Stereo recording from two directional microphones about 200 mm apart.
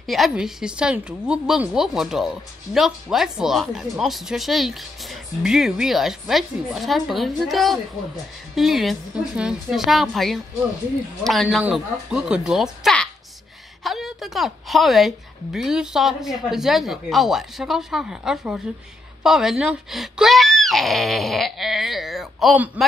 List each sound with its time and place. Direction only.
0.0 s a woman's voice: centre (ahead or behind)